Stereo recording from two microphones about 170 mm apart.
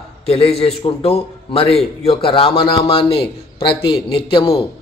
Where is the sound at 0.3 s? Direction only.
35° left (ahead or behind).